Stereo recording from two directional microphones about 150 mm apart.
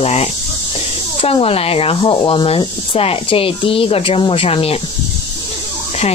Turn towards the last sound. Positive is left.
turn(degrees=40)  # may be behind; listen again after turning